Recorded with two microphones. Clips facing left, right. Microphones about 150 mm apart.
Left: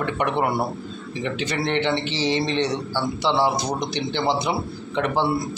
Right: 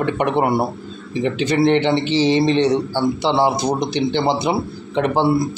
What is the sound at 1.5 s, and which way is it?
A man's voice, 25° right (ahead or behind).